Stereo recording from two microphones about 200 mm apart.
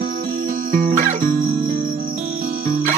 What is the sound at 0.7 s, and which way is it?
Music, 40° right (ahead or behind).